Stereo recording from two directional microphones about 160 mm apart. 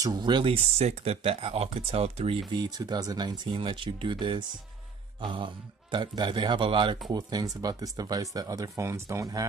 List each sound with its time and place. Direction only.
0.0 s speech: 25° right (ahead or behind)